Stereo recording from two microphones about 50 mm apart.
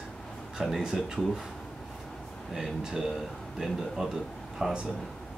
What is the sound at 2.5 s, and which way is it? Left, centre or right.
Speech, centre.